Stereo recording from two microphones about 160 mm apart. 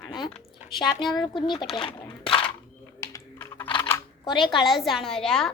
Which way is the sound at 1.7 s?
30° left (ahead or behind).